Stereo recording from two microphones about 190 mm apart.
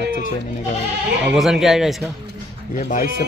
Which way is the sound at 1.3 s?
Centre (ahead or behind).